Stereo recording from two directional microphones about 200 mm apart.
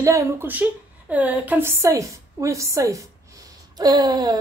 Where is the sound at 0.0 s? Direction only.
15° right (ahead or behind).